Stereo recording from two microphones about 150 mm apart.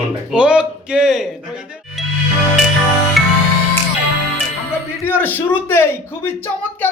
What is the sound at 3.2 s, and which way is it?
Music, centre (ahead or behind).